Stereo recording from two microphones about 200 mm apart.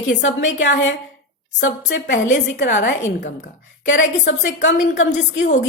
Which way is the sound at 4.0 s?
65° left (ahead or behind).